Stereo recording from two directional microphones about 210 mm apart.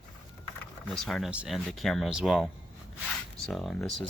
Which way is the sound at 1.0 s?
Centre (ahead or behind).